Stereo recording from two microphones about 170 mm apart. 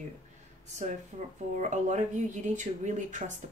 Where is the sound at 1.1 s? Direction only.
35° right (ahead or behind).